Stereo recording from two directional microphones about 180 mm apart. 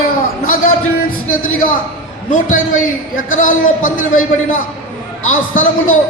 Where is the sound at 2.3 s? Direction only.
45° left (ahead or behind).